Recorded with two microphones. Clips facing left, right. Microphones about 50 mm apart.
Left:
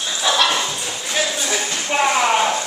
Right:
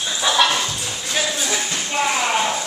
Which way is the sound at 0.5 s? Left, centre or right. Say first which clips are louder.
Left 1 dB; centre.